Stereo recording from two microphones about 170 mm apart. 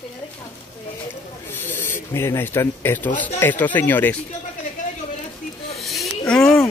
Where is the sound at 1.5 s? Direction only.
10° left (ahead or behind).